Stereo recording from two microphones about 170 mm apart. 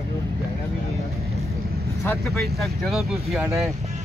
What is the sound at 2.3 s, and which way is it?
Speech, centre (ahead or behind).